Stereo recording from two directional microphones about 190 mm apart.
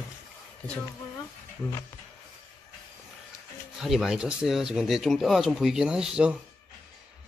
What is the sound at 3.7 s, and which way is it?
Speech, centre (ahead or behind).